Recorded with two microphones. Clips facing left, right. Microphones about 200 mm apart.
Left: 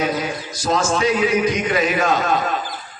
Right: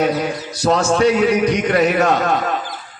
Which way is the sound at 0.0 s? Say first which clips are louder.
Right 4 dB; 65° right (ahead or behind).